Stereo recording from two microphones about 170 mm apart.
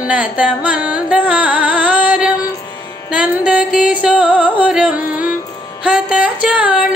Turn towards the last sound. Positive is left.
turn(degrees=-5)  # may be behind; listen again after turning